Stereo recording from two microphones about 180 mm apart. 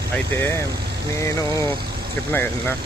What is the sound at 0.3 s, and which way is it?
Speech, 10° left (ahead or behind).